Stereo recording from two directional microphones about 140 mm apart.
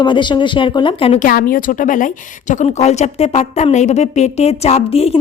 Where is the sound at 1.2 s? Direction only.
85° left.